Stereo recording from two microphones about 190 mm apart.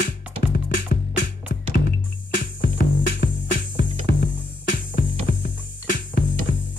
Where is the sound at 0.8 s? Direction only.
55° left (ahead or behind).